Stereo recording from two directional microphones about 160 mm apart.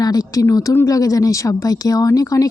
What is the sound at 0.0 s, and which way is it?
Speech, 25° left (ahead or behind).